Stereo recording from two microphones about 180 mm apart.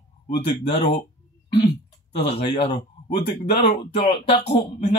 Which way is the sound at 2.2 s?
35° left (ahead or behind).